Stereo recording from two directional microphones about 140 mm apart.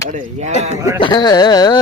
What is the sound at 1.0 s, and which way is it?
Speech, 30° left (ahead or behind).